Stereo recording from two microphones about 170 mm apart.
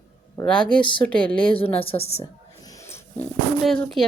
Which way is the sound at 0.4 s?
5° left (ahead or behind).